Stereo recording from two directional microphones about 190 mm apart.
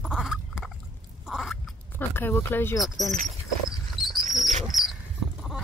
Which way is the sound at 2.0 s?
10° left (ahead or behind).